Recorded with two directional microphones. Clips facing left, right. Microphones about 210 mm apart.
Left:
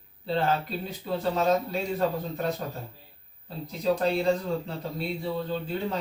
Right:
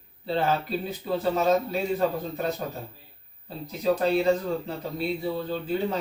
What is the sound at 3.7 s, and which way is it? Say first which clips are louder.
Speech: right 2 dB; 5° right (ahead or behind).